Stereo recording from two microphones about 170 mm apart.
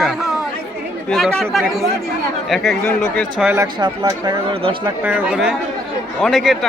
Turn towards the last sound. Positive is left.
turn(degrees=0)  # may be behind; listen again after turning